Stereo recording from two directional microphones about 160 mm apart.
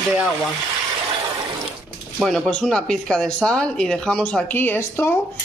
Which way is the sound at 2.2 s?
Centre (ahead or behind).